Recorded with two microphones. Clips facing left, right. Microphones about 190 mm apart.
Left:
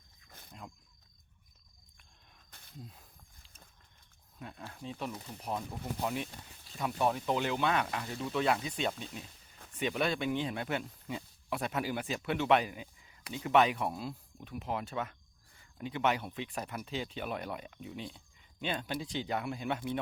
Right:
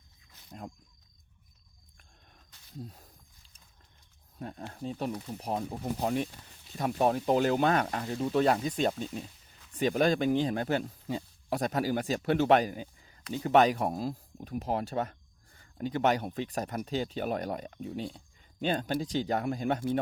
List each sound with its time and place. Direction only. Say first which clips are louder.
0.3 s wild animals: left 5 dB; 55° left (ahead or behind)
2.5 s wild animals: left 3 dB; 55° left (ahead or behind)
2.8 s speech: right 7 dB; 40° right (ahead or behind)
4.4 s speech: right 6 dB; 40° right (ahead or behind)